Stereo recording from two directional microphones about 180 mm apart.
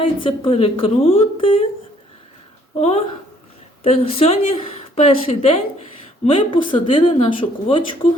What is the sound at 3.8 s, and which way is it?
A woman's voice, 35° left (ahead or behind).